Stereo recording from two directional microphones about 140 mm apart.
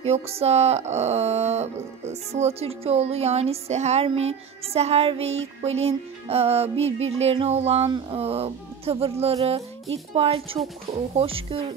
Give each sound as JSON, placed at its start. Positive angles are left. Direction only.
{"t": 0.0, "sound": "speech", "side_deg": -45}